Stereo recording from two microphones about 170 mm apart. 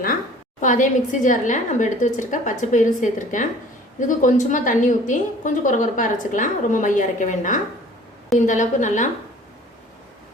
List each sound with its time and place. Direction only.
0.6 s a woman's voice: 50° left (ahead or behind)